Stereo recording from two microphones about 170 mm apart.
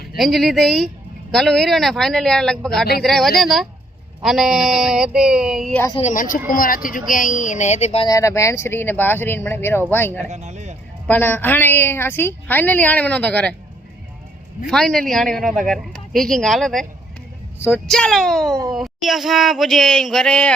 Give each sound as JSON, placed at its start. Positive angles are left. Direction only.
{"t": 0.2, "sound": "speech", "side_deg": 0}
{"t": 5.9, "sound": "speech", "side_deg": 40}
{"t": 8.0, "sound": "a woman's voice", "side_deg": 20}
{"t": 10.2, "sound": "speech", "side_deg": -40}
{"t": 11.1, "sound": "a woman's voice", "side_deg": 10}
{"t": 14.7, "sound": "speech", "side_deg": 5}